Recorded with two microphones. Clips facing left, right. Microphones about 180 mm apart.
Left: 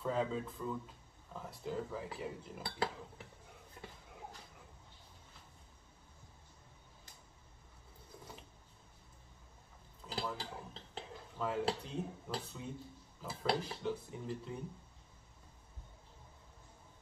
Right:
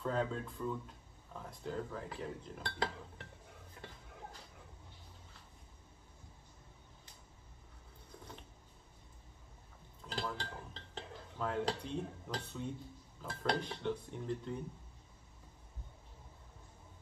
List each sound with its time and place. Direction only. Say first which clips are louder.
0.0 s speech: left 1 dB; 5° left (ahead or behind)
10.0 s dishes: even; 5° left (ahead or behind)
13.2 s speech: even; 5° left (ahead or behind)